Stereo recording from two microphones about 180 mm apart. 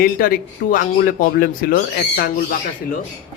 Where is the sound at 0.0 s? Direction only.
55° left (ahead or behind).